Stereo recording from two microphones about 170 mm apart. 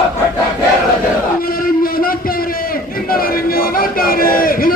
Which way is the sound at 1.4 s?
60° left (ahead or behind).